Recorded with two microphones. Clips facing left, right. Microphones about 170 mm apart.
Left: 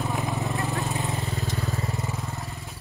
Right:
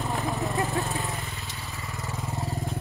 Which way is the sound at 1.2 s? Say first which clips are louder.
Left 9 dB; 40° left (ahead or behind).